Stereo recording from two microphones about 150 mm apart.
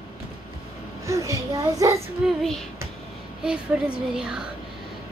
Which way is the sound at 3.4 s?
5° right (ahead or behind).